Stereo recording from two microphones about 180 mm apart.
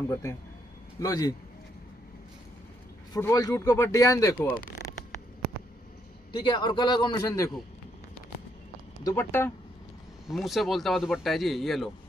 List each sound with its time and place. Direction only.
0.1 s a man's voice: 15° left (ahead or behind)
3.1 s speech: 20° left (ahead or behind)
6.3 s a man's voice: 25° left (ahead or behind)
9.0 s speech: 15° left (ahead or behind)
10.2 s speech: centre (ahead or behind)